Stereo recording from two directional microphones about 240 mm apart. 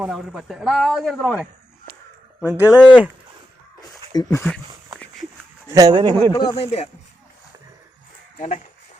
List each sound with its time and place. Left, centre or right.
0.0 s speech: centre
4.1 s speech: centre
5.7 s speech: centre
6.3 s speech: centre
8.4 s speech: left